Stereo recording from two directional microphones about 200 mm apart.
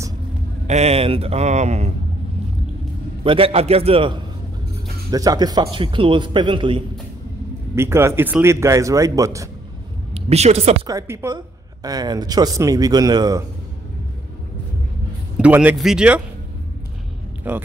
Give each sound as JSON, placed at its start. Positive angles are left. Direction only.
{"t": 0.7, "sound": "speech", "side_deg": -30}
{"t": 3.3, "sound": "a woman's voice", "side_deg": -30}
{"t": 7.7, "sound": "speech", "side_deg": -10}
{"t": 10.1, "sound": "a woman's voice", "side_deg": -30}
{"t": 10.9, "sound": "a woman's voice", "side_deg": -15}
{"t": 15.3, "sound": "speech", "side_deg": -5}
{"t": 17.4, "sound": "speech", "side_deg": -10}